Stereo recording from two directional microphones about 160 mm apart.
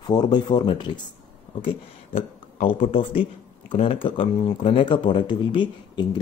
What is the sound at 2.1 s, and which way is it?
Speech, 40° left (ahead or behind).